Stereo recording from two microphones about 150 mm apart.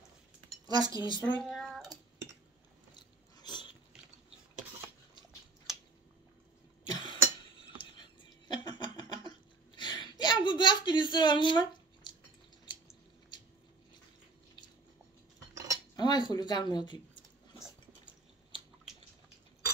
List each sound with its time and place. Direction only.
0.7 s speech: 25° right (ahead or behind)
1.1 s speech: 30° left (ahead or behind)
1.4 s cat: centre (ahead or behind)
3.0 s biting: 30° left (ahead or behind)
6.9 s a sound: 30° left (ahead or behind)
16.0 s a sound: 30° left (ahead or behind)